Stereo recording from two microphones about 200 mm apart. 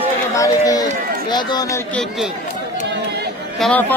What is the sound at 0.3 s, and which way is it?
Speech, 15° left (ahead or behind).